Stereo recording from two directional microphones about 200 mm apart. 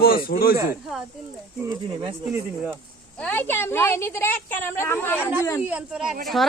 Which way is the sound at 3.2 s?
10° left (ahead or behind).